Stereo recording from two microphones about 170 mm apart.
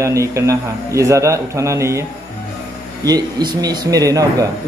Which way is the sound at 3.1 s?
25° right (ahead or behind).